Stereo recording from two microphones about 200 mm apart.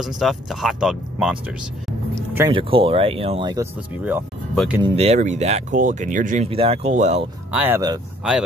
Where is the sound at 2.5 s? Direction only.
25° right (ahead or behind).